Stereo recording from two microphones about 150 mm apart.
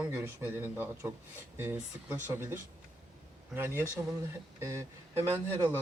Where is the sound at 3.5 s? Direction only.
15° right (ahead or behind).